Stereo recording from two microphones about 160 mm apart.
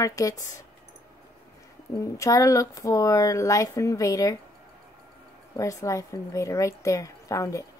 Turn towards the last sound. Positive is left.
turn(degrees=20)  # may be behind; listen again after turning